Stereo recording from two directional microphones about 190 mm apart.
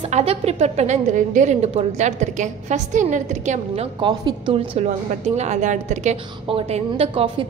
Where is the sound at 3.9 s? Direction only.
25° right (ahead or behind).